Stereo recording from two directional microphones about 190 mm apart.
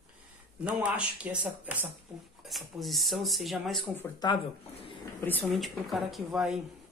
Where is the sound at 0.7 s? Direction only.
5° right (ahead or behind).